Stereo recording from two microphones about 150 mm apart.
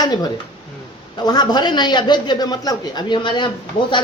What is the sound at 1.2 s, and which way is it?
A woman's voice, 25° left (ahead or behind).